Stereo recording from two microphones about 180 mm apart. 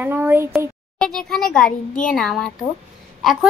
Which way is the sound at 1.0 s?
5° left (ahead or behind).